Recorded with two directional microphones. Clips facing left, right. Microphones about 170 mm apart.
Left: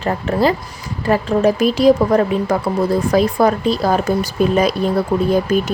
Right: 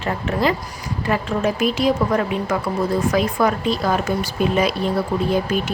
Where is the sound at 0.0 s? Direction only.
35° left (ahead or behind).